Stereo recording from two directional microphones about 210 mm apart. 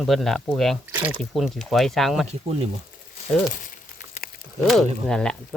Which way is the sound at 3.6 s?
40° left (ahead or behind).